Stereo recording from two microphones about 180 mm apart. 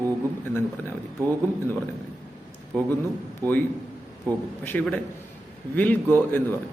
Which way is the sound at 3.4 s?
20° right (ahead or behind).